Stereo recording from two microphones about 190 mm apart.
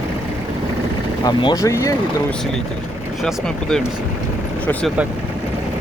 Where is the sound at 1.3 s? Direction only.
20° left (ahead or behind).